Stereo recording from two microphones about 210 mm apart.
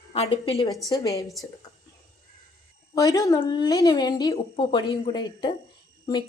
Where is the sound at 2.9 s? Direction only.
15° left (ahead or behind).